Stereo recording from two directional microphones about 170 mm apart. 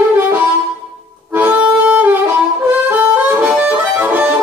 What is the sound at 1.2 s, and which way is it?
Harmonica, 10° right (ahead or behind).